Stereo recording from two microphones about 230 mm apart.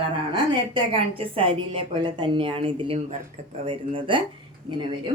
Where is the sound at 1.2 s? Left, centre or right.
Right.